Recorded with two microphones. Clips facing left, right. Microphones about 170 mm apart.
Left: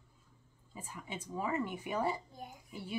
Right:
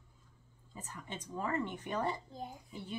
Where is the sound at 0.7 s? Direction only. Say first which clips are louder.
Left 1 dB; 10° left (ahead or behind).